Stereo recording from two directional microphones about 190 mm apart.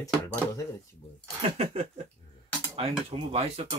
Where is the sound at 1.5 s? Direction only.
35° right (ahead or behind).